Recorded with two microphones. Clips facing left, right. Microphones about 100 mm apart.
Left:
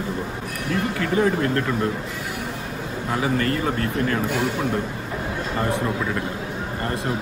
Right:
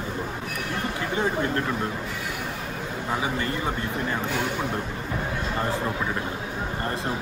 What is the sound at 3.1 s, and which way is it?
Speech, 15° right (ahead or behind).